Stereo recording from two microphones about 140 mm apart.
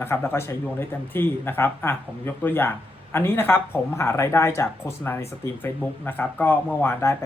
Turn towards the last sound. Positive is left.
turn(degrees=20)  # may be behind; listen again after turning